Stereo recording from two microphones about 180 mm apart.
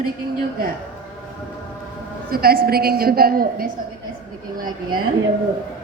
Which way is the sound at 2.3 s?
55° right (ahead or behind).